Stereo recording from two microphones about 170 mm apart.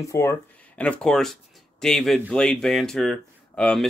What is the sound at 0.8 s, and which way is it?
Speech, 5° left (ahead or behind).